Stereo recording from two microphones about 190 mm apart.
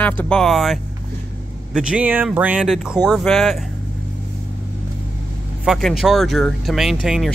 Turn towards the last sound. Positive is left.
turn(degrees=0)  # may be behind; listen again after turning